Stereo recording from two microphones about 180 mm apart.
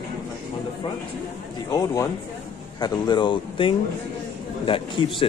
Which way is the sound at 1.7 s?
20° left (ahead or behind).